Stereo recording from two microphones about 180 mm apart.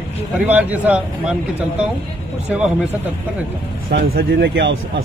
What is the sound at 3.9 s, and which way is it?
Speech, 60° right (ahead or behind).